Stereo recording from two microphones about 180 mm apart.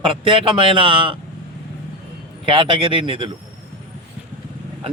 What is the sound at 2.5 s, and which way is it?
Speech, 30° right (ahead or behind).